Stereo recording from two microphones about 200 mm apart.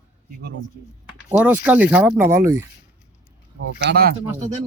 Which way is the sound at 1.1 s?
5° right (ahead or behind).